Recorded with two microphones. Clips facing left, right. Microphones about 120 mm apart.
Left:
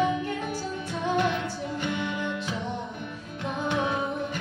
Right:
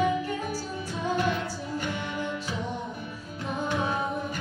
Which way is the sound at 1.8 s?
45° right (ahead or behind).